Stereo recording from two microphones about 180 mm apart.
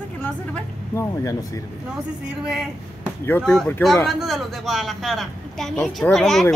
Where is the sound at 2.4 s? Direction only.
5° right (ahead or behind).